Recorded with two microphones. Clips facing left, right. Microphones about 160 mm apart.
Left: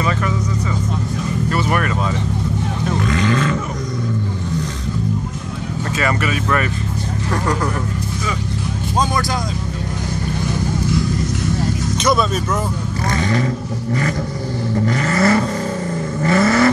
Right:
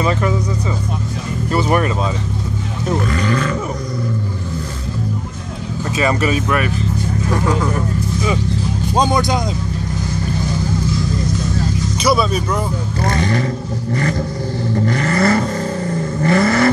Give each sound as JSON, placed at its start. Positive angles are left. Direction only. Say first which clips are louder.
{"t": 1.5, "sound": "vehicle", "louder": "right 5 dB", "side_deg": -25}
{"t": 3.1, "sound": "roar", "louder": "left 1 dB", "side_deg": 0}
{"t": 5.9, "sound": "speech", "louder": "right 4 dB", "side_deg": -20}
{"t": 7.2, "sound": "speech", "louder": "right 1 dB", "side_deg": 0}
{"t": 8.9, "sound": "speech", "louder": "right 3 dB", "side_deg": -20}
{"t": 12.0, "sound": "speech", "louder": "right 1 dB", "side_deg": -5}
{"t": 15.0, "sound": "vehicle", "louder": "even", "side_deg": -40}